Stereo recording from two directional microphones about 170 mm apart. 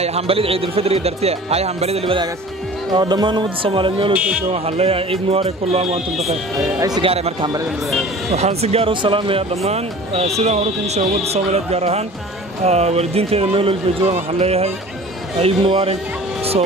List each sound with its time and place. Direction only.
0.0 s speech: 35° right (ahead or behind)
2.9 s speech: 25° right (ahead or behind)
6.8 s speech: 25° right (ahead or behind)
7.1 s speech: 35° right (ahead or behind)